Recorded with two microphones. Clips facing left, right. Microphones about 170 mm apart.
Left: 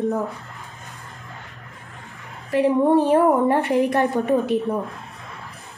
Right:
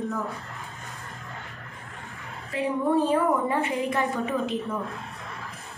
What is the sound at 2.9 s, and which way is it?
A woman's voice, 70° left (ahead or behind).